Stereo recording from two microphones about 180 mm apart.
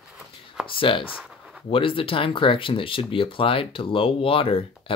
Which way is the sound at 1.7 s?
30° left (ahead or behind).